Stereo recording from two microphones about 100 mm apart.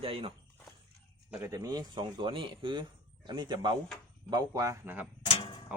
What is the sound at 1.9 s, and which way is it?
Speech, 60° right (ahead or behind).